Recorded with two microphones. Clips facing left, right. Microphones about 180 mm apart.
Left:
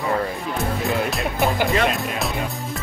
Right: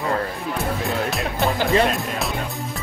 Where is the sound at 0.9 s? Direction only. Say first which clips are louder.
Left 1 dB; centre (ahead or behind).